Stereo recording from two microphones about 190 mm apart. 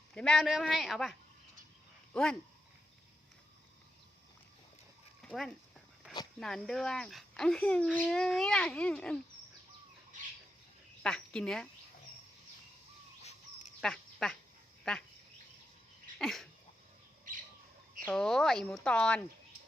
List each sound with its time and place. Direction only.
0.1 s speech: 5° left (ahead or behind)
2.1 s speech: 5° left (ahead or behind)
5.2 s speech: centre (ahead or behind)
11.0 s speech: 5° left (ahead or behind)
13.2 s a sound: 40° left (ahead or behind)
13.8 s speech: 5° left (ahead or behind)
16.1 s sneeze: centre (ahead or behind)
18.0 s speech: 5° left (ahead or behind)